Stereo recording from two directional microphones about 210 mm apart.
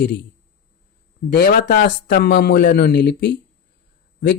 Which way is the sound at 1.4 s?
50° left (ahead or behind).